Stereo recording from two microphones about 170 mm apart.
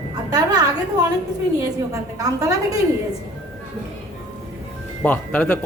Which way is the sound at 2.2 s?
20° right (ahead or behind).